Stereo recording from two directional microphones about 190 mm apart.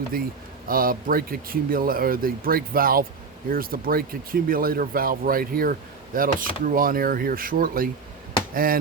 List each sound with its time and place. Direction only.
0.7 s speech: 50° right (ahead or behind)